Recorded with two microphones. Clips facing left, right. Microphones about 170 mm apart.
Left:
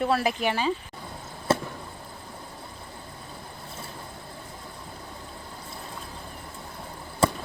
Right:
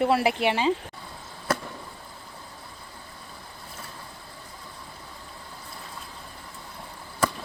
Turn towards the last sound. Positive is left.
turn(degrees=25)  # may be behind; listen again after turning